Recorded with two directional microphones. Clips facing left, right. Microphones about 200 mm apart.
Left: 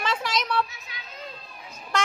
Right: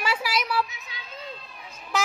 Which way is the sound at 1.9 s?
5° right (ahead or behind).